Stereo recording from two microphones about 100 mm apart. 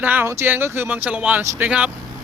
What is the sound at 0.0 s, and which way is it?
Speech, 20° right (ahead or behind).